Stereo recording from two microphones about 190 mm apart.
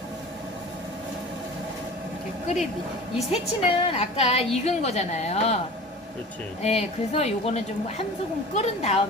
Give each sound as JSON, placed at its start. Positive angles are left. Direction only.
{"t": 3.2, "sound": "a woman's voice", "side_deg": 30}
{"t": 6.6, "sound": "a woman's voice", "side_deg": 35}